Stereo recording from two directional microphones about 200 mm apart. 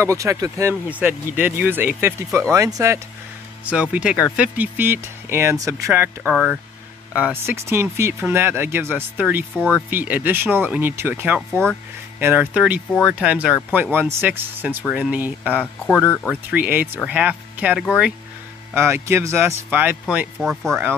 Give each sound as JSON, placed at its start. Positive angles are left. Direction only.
{"t": 0.0, "sound": "speech", "side_deg": -15}
{"t": 6.2, "sound": "speech", "side_deg": -5}
{"t": 9.6, "sound": "speech", "side_deg": 10}
{"t": 9.8, "sound": "speech", "side_deg": -10}
{"t": 15.9, "sound": "speech", "side_deg": 10}
{"t": 16.3, "sound": "speech", "side_deg": -10}